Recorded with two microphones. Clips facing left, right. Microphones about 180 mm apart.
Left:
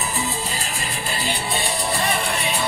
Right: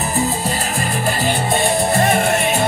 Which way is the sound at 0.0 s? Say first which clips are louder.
Right 7 dB; 50° right (ahead or behind).